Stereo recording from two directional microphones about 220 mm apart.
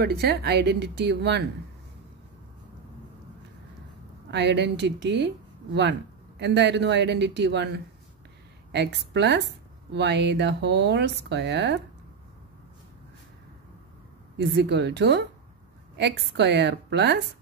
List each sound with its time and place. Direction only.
0.0 s speech: 45° right (ahead or behind)
4.3 s speech: 50° right (ahead or behind)
14.4 s speech: 50° right (ahead or behind)